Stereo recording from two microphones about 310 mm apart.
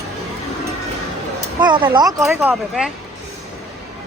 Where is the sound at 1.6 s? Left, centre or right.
Centre.